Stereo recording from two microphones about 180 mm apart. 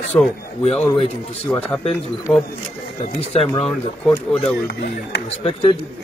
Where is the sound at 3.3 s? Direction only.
35° left (ahead or behind).